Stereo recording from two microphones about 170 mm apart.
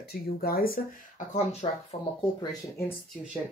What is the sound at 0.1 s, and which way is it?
Speech, 60° left (ahead or behind).